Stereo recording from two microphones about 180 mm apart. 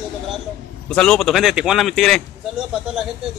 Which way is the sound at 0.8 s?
5° left (ahead or behind).